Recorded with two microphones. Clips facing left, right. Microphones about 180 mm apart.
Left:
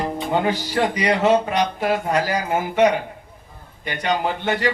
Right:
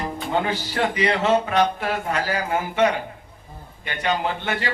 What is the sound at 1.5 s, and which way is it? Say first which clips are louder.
A man's voice: left 1 dB; 15° left (ahead or behind).